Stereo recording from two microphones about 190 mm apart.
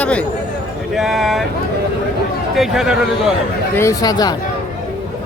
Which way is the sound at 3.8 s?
15° left (ahead or behind).